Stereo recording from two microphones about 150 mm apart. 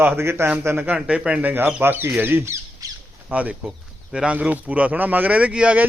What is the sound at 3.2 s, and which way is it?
Speech, 10° right (ahead or behind).